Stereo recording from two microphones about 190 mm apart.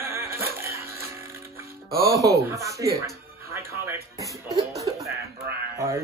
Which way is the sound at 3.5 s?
15° right (ahead or behind).